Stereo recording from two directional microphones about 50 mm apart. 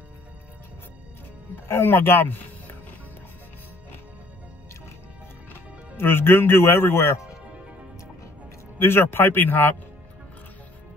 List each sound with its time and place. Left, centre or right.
1.5 s speech: left
5.5 s speech: left
8.7 s speech: left